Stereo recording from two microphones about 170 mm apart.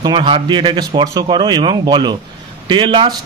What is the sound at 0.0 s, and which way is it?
A man's voice, 30° right (ahead or behind).